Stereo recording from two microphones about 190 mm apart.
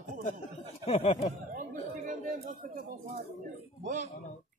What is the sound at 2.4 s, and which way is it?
Speech, 55° right (ahead or behind).